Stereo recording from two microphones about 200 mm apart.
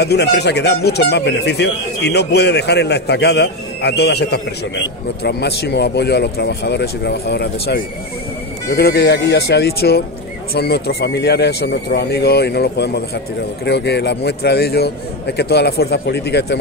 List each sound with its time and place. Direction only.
0.0 s speech: 55° left (ahead or behind)